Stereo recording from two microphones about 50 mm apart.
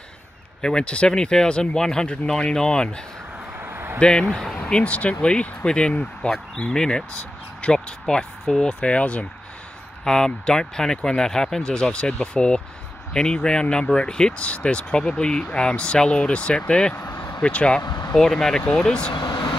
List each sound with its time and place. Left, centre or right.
0.6 s speech: centre
3.6 s a sound: right
4.0 s speech: centre
4.6 s speech: left
10.0 s speech: centre
16.9 s speech: left
17.4 s speech: left
18.1 s speech: centre